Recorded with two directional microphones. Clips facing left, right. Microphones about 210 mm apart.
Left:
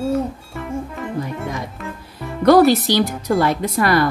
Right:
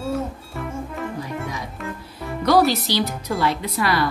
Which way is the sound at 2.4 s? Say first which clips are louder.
Left 6 dB; 50° left (ahead or behind).